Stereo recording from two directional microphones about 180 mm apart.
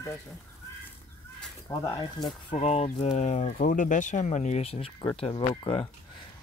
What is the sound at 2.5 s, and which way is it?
Speech, 35° left (ahead or behind).